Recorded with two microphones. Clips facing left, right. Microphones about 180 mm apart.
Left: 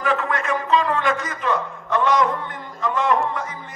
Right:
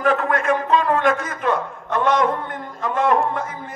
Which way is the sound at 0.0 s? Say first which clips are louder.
Right 4 dB; 50° right (ahead or behind).